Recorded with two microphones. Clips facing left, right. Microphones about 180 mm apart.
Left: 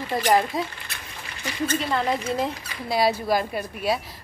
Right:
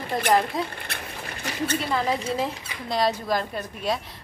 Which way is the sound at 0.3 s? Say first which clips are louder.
Left 1 dB; centre (ahead or behind).